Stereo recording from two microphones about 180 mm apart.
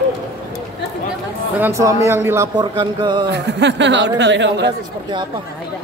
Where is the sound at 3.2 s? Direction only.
75° right (ahead or behind).